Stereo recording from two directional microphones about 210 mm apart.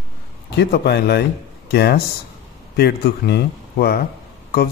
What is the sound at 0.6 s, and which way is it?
A man's voice, 50° left (ahead or behind).